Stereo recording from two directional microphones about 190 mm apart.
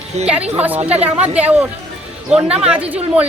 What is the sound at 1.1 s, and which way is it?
Speech, 35° right (ahead or behind).